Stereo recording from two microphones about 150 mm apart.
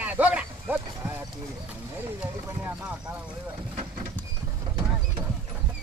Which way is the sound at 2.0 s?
10° right (ahead or behind).